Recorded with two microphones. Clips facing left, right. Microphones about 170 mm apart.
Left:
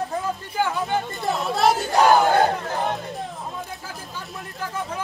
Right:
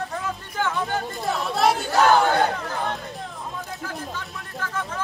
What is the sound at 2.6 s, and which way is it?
Speech, 20° left (ahead or behind).